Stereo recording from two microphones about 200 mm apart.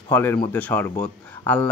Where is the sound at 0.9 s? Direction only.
20° left (ahead or behind).